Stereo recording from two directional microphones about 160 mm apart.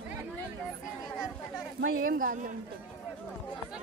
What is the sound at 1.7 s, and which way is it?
Speech, 65° right (ahead or behind).